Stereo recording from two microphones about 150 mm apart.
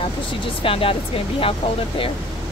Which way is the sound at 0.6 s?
35° left (ahead or behind).